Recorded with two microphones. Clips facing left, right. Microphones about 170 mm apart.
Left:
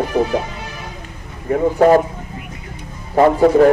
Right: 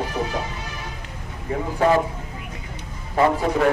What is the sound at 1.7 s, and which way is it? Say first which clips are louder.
Speech: left 6 dB; 40° left (ahead or behind).